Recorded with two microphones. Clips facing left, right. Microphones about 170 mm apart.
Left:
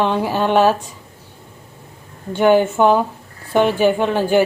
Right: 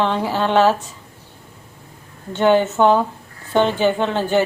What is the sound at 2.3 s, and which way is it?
A woman's voice, 10° left (ahead or behind).